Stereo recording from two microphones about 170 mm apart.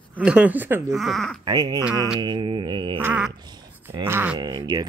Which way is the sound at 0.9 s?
Centre (ahead or behind).